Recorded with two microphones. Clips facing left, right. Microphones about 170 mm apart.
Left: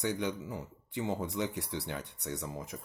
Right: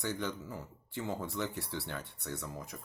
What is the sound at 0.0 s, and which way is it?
Speech, 15° left (ahead or behind).